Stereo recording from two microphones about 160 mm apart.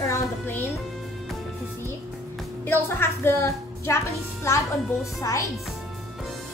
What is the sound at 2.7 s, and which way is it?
A woman's voice, 15° left (ahead or behind).